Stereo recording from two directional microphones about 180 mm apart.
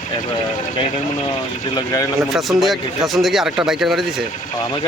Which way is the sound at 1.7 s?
20° left (ahead or behind).